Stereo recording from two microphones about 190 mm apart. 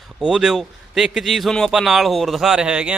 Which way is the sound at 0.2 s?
5° right (ahead or behind).